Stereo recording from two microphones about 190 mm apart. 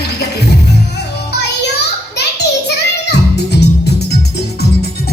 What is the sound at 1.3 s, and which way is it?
Music, 60° left (ahead or behind).